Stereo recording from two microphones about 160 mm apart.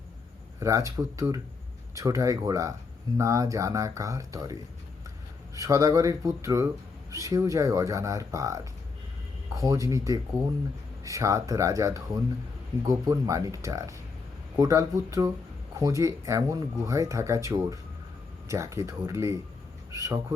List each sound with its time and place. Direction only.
0.6 s speech: 20° right (ahead or behind)
5.5 s a man's voice: 20° right (ahead or behind)